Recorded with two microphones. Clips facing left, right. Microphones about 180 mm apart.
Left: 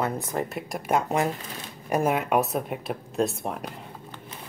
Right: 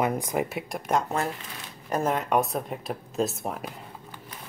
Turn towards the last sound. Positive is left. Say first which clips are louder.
# left 2 dB
turn(degrees=0)  # may be behind; listen again after turning